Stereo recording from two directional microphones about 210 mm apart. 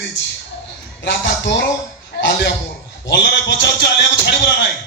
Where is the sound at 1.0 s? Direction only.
60° left (ahead or behind).